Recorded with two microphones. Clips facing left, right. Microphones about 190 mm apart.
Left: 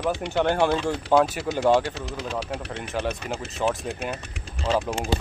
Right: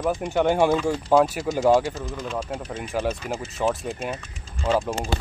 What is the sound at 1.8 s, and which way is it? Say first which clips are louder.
Speech: right 1 dB; 70° left (ahead or behind).